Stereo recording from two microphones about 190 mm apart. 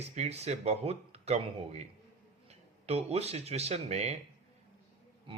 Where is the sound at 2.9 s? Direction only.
35° right (ahead or behind).